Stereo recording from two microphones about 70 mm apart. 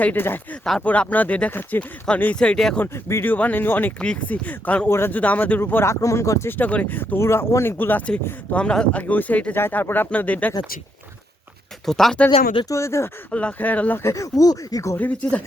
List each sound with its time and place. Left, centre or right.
0.0 s speech: left; by 2.7 s centre
2.9 s speech: left
3.2 s speech: left
4.9 s speech: left
5.1 s speech: left
5.8 s speech: left
6.5 s speech: left
7.2 s speech: left
8.0 s speech: centre
11.9 s speech: centre
12.6 s speech: left
13.3 s speech: left
14.0 s speech: left
14.9 s speech: left